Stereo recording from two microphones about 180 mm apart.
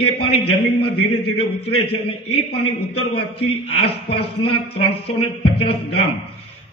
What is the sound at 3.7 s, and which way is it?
A man's voice, 30° left (ahead or behind).